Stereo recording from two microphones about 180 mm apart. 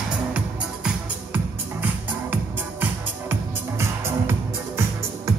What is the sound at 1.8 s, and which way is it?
Music, 10° right (ahead or behind).